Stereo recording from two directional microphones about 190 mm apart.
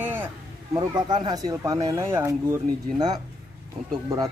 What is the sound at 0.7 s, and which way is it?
Speech, 20° right (ahead or behind).